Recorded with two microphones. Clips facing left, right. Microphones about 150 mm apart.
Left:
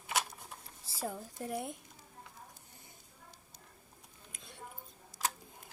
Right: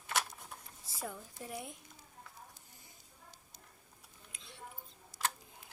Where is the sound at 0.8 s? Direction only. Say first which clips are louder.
Left 4 dB; 30° left (ahead or behind).